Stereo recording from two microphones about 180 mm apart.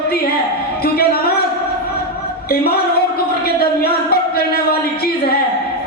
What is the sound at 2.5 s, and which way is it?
Speech, 60° left (ahead or behind).